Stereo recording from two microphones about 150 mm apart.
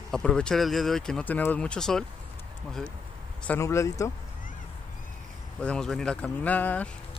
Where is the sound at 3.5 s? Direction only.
20° left (ahead or behind).